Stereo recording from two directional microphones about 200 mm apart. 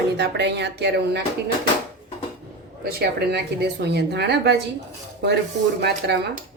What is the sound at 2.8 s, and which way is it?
A woman's voice, 50° right (ahead or behind).